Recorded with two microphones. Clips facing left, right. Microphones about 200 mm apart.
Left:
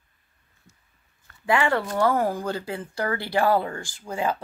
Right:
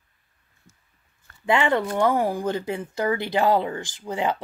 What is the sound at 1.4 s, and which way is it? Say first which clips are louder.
Speech: right 2 dB; 25° right (ahead or behind).